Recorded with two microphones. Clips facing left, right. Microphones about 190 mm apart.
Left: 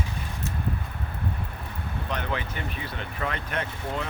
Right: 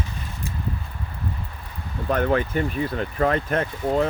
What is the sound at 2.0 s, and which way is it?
Speech, 50° right (ahead or behind).